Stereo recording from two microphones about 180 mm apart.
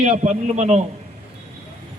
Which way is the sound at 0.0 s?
40° right (ahead or behind).